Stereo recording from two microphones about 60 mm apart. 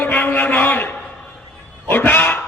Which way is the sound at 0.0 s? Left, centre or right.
Left.